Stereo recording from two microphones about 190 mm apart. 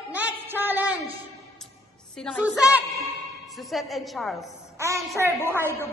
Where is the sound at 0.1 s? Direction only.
10° right (ahead or behind).